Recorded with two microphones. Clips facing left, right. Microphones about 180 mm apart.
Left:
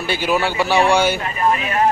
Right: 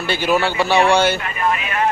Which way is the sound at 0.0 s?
10° left (ahead or behind).